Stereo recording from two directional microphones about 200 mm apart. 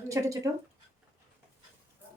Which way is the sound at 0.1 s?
15° right (ahead or behind).